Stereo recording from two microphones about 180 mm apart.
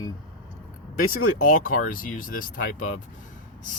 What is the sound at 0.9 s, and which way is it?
Speech, 50° left (ahead or behind).